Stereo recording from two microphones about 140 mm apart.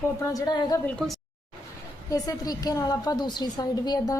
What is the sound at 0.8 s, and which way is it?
Speech, 5° left (ahead or behind).